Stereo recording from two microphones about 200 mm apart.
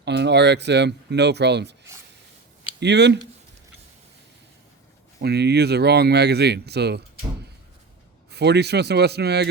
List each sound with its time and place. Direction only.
0.0 s speech: 60° right (ahead or behind)
2.8 s speech: 60° right (ahead or behind)
5.2 s speech: 55° right (ahead or behind)
8.3 s speech: 55° right (ahead or behind)